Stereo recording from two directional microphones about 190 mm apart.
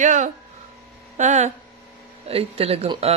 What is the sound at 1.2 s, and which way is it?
Speech, 40° right (ahead or behind).